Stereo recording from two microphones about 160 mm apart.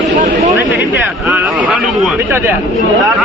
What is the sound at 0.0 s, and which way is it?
Chatter, 45° right (ahead or behind).